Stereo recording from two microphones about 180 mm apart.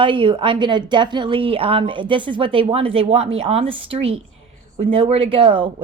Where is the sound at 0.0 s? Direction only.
30° right (ahead or behind).